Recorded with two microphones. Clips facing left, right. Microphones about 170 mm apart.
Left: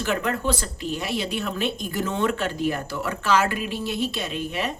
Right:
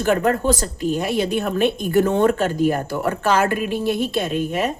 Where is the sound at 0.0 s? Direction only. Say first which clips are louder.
Right 7 dB; 45° right (ahead or behind).